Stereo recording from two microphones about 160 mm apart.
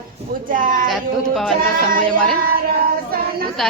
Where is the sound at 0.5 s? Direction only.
60° right (ahead or behind).